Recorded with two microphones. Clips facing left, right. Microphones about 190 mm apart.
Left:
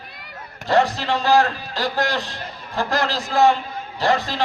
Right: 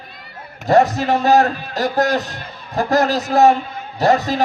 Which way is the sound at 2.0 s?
45° right (ahead or behind).